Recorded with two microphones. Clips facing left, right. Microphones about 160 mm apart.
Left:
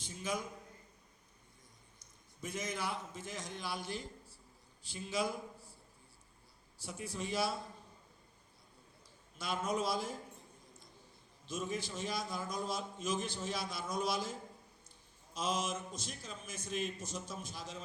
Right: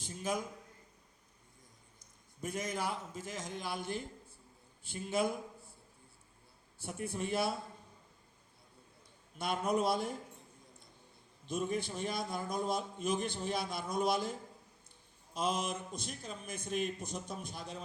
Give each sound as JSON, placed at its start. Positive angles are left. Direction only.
{"t": 0.0, "sound": "a sound", "side_deg": -50}
{"t": 2.4, "sound": "a man's voice", "side_deg": -50}
{"t": 6.7, "sound": "a man's voice", "side_deg": -55}
{"t": 9.4, "sound": "a man's voice", "side_deg": -60}
{"t": 11.4, "sound": "a man's voice", "side_deg": -55}
{"t": 15.4, "sound": "a man's voice", "side_deg": -55}